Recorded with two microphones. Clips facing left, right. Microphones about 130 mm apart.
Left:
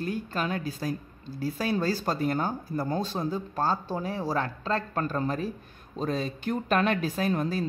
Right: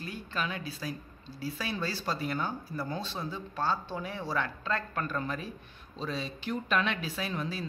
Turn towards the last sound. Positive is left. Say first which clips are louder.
# left 8 dB
turn(degrees=45)  # may be behind; listen again after turning